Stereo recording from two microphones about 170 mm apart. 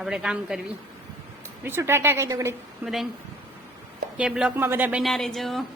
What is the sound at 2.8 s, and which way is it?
Speech, centre (ahead or behind).